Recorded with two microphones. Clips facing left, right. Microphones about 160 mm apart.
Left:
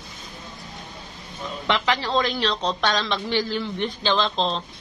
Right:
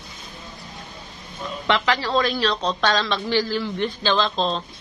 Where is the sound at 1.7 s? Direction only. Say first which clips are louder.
Right 2 dB; 20° left (ahead or behind).